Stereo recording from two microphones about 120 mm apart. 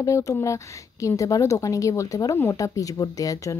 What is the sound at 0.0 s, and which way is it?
A woman's voice, 25° left (ahead or behind).